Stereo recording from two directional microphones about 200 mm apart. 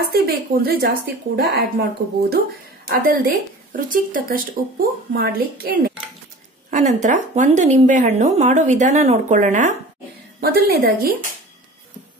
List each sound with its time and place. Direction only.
0.1 s speech: 50° right (ahead or behind)
6.7 s a woman's voice: 35° right (ahead or behind)
10.4 s speech: 50° right (ahead or behind)